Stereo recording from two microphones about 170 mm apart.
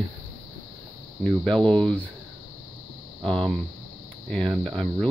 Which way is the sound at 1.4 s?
5° left (ahead or behind).